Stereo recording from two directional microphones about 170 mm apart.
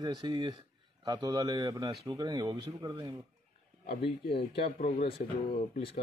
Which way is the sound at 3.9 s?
70° left (ahead or behind).